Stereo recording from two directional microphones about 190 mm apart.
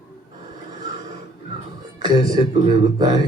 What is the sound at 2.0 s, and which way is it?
A man's voice, 25° right (ahead or behind).